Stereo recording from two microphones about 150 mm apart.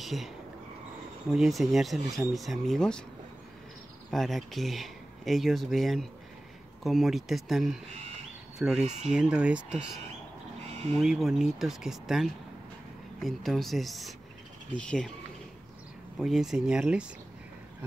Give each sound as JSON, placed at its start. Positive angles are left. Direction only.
{"t": 0.0, "sound": "speech", "side_deg": 0}
{"t": 1.3, "sound": "speech", "side_deg": 0}
{"t": 4.1, "sound": "speech", "side_deg": 0}
{"t": 8.8, "sound": "speech", "side_deg": -50}
{"t": 9.1, "sound": "speech", "side_deg": -5}
{"t": 11.0, "sound": "speech", "side_deg": 0}
{"t": 16.2, "sound": "speech", "side_deg": 0}